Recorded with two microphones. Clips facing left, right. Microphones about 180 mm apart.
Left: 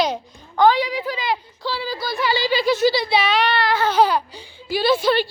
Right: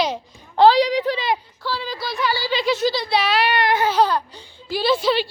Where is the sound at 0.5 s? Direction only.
35° right (ahead or behind).